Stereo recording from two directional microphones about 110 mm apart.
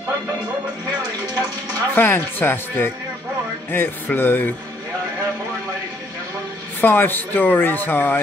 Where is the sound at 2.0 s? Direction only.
20° left (ahead or behind).